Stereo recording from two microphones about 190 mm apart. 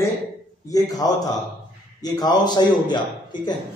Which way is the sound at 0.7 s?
20° left (ahead or behind).